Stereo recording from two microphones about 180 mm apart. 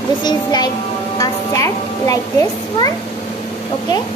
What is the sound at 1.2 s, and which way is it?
Speech, 20° left (ahead or behind).